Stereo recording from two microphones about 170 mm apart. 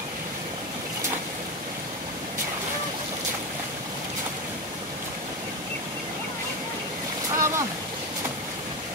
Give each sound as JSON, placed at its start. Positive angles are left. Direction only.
{"t": 7.3, "sound": "stream", "side_deg": -15}